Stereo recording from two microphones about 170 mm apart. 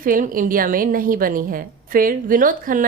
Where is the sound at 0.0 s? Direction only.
55° right (ahead or behind).